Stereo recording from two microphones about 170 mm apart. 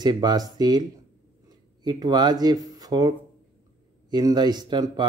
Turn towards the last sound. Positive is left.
turn(degrees=-25)  # may be behind; listen again after turning